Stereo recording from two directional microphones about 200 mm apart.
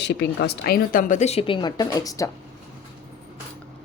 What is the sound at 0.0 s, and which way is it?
A woman's voice, 60° left (ahead or behind).